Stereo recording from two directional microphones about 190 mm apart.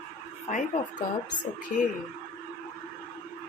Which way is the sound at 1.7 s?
50° left (ahead or behind).